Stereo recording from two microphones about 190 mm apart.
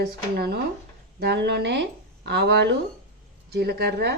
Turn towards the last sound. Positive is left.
turn(degrees=-55)  # may be behind; listen again after turning